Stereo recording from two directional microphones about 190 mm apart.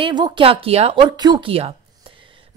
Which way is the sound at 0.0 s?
25° right (ahead or behind).